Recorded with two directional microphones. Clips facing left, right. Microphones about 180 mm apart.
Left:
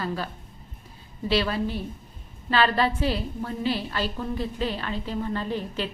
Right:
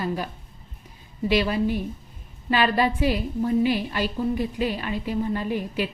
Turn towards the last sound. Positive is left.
turn(degrees=-10)  # may be behind; listen again after turning